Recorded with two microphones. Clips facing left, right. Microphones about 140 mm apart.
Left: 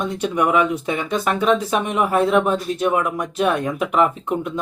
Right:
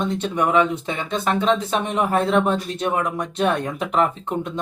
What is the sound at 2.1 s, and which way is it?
A man's voice, 5° left (ahead or behind).